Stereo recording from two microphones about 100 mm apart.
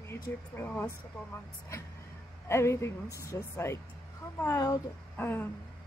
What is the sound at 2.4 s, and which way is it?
A woman's voice, 25° left (ahead or behind).